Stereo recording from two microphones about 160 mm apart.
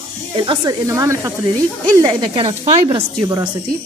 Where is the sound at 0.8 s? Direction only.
20° right (ahead or behind).